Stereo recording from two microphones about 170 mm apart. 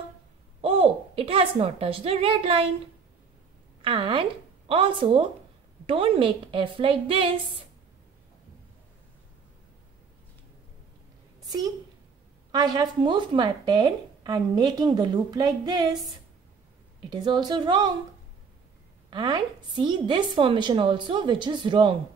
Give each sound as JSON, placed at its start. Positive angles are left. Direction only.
{"t": 0.6, "sound": "a woman's voice", "side_deg": -35}
{"t": 3.8, "sound": "a woman's voice", "side_deg": -30}
{"t": 11.4, "sound": "a woman's voice", "side_deg": -25}
{"t": 17.1, "sound": "speech", "side_deg": -25}
{"t": 19.0, "sound": "speech", "side_deg": -25}